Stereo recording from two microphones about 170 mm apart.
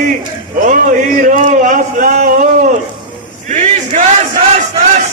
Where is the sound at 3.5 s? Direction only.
45° right (ahead or behind).